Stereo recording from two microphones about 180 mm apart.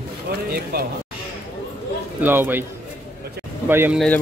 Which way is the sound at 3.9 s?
5° left (ahead or behind).